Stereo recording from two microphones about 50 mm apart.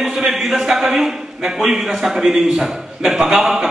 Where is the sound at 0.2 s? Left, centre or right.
Centre.